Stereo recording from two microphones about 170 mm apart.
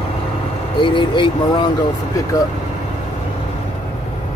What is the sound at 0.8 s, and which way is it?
Speech, 30° left (ahead or behind).